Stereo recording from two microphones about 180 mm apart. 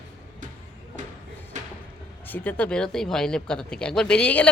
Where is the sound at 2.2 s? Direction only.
10° left (ahead or behind).